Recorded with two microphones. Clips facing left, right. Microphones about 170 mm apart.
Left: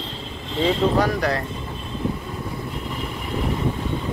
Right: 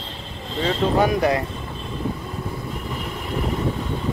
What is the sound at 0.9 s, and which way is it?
Speech, 20° right (ahead or behind).